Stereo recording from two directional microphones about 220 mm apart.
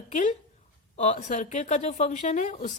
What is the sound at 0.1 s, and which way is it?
A woman's voice, 35° left (ahead or behind).